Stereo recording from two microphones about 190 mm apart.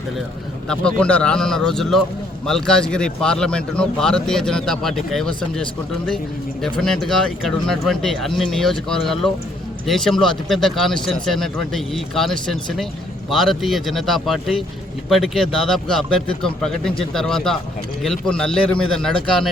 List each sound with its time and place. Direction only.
0.7 s speech: 5° left (ahead or behind)
6.7 s speech: centre (ahead or behind)